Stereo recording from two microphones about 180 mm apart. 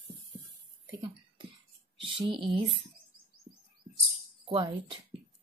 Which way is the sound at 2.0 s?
30° right (ahead or behind).